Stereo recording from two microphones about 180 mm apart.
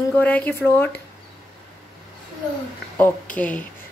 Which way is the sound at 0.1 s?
10° left (ahead or behind).